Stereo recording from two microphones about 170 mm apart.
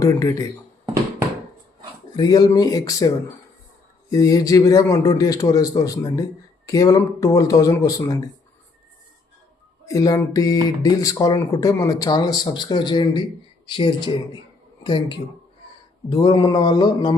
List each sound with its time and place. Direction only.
0.0 s speech: 20° left (ahead or behind)
2.1 s speech: 25° left (ahead or behind)
4.1 s speech: 20° left (ahead or behind)
9.9 s speech: 20° left (ahead or behind)